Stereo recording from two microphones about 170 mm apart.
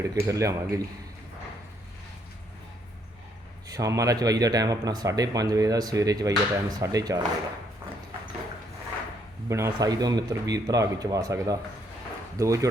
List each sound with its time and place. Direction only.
0.0 s speech: 20° right (ahead or behind)
3.7 s speech: 20° right (ahead or behind)
9.5 s speech: 15° right (ahead or behind)